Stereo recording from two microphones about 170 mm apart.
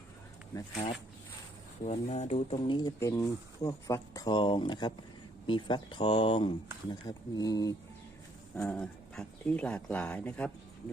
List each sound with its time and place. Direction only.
1.8 s speech: 40° left (ahead or behind); by 7.8 s 20° left (ahead or behind)
8.5 s speech: 5° left (ahead or behind)